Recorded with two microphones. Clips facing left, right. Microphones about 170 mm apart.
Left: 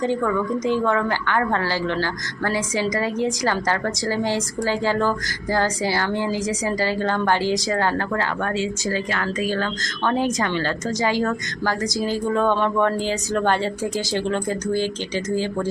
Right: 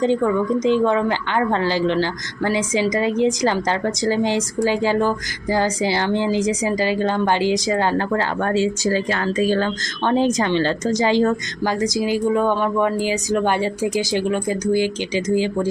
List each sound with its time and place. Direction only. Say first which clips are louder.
0.0 s a woman's voice: right 4 dB; 20° right (ahead or behind)